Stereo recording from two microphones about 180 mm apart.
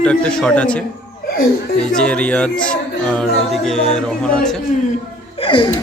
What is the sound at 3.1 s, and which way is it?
Music, 5° left (ahead or behind).